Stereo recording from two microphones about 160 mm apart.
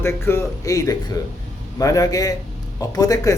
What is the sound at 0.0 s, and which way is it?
Speech, 15° left (ahead or behind).